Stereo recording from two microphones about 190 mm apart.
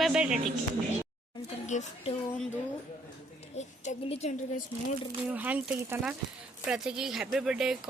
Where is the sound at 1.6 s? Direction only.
40° left (ahead or behind).